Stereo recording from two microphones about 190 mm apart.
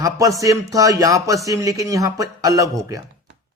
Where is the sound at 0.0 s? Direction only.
15° right (ahead or behind).